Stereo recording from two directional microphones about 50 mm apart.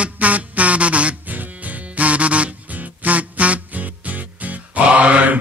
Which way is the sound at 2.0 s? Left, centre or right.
Right.